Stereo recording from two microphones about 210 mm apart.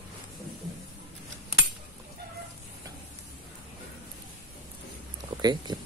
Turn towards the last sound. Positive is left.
turn(degrees=-20)  # may be behind; listen again after turning